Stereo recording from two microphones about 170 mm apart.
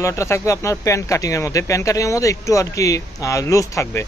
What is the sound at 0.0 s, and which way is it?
Speech, 15° left (ahead or behind).